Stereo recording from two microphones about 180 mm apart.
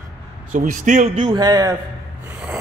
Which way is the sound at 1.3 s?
20° right (ahead or behind).